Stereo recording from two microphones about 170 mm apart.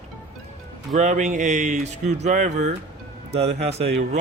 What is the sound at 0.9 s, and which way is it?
Speech, 45° right (ahead or behind).